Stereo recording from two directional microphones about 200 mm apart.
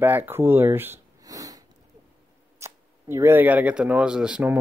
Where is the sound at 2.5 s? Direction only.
15° right (ahead or behind).